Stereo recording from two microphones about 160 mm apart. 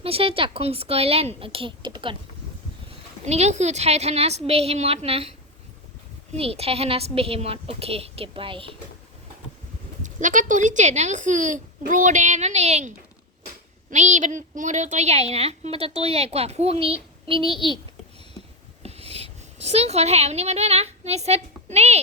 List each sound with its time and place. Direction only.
0.0 s a woman's voice: 35° right (ahead or behind)
3.2 s a woman's voice: 45° right (ahead or behind)
6.3 s a woman's voice: 40° right (ahead or behind)
10.0 s speech: 55° right (ahead or behind)
13.9 s a woman's voice: 50° right (ahead or behind); by 17.7 s 30° right (ahead or behind)
18.8 s speech: 40° right (ahead or behind)